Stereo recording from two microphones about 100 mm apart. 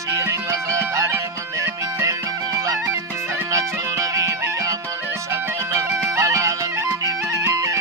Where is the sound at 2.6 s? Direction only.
35° right (ahead or behind).